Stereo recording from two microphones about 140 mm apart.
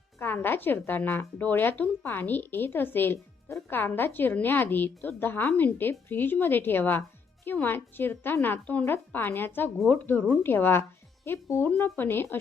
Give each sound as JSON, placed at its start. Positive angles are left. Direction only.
{"t": 0.2, "sound": "a woman's voice", "side_deg": 15}